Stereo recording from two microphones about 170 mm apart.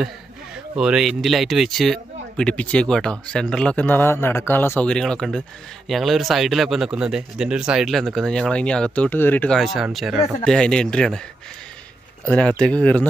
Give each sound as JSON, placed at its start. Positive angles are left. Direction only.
{"t": 0.7, "sound": "speech", "side_deg": -5}
{"t": 12.3, "sound": "speech", "side_deg": 5}